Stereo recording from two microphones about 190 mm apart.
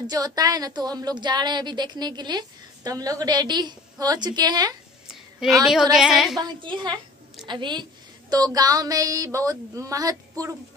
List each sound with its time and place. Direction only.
0.0 s a woman's voice: 20° right (ahead or behind)
5.0 s a sound: centre (ahead or behind)
5.9 s speech: centre (ahead or behind)
6.3 s a woman's voice: 25° right (ahead or behind)